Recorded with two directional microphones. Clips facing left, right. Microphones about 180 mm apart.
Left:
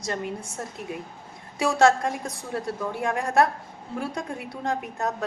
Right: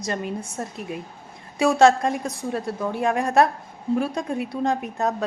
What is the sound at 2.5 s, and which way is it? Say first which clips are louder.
A woman's voice: right 1 dB; 20° right (ahead or behind).